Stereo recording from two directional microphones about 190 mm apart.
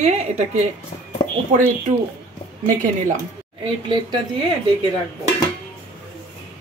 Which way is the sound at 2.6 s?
45° right (ahead or behind).